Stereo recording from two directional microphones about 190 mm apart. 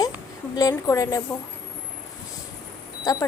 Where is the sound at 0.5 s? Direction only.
20° left (ahead or behind).